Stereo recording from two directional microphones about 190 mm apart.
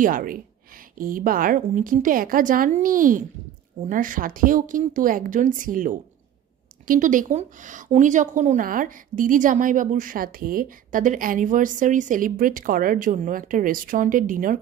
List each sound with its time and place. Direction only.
0.0 s a woman's voice: 45° right (ahead or behind)